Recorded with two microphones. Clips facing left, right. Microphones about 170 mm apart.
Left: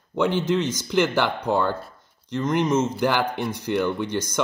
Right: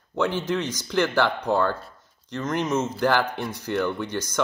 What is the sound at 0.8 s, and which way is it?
Speech, 20° left (ahead or behind).